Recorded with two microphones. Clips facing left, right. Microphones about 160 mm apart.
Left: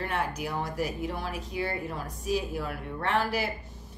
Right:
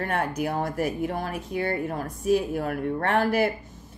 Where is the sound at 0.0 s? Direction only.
50° right (ahead or behind).